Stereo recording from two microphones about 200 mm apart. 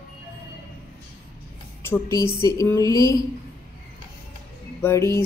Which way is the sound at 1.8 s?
10° left (ahead or behind).